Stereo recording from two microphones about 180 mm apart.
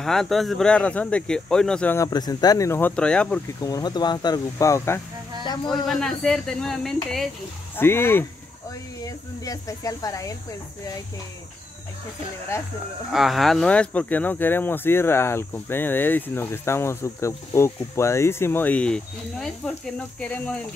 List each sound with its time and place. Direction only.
0.0 s speech: centre (ahead or behind)
2.0 s speech: 20° left (ahead or behind); by 3.3 s 5° left (ahead or behind)
3.6 s speech: 20° left (ahead or behind)
5.4 s speech: 25° left (ahead or behind)
5.9 s speech: centre (ahead or behind)
7.7 s speech: 15° left (ahead or behind)
13.1 s speech: centre (ahead or behind)